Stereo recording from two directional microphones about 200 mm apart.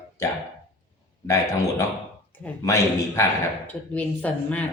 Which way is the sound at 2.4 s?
15° left (ahead or behind).